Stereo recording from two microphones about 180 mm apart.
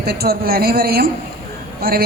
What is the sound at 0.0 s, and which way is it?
Speech, 60° right (ahead or behind).